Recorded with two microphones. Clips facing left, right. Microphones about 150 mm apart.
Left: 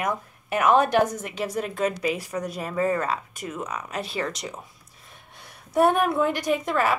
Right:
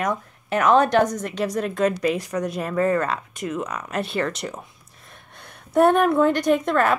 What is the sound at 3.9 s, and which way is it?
Speech, 60° right (ahead or behind).